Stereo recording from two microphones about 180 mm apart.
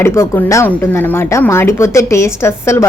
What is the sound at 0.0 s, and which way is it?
A woman's voice, 15° left (ahead or behind).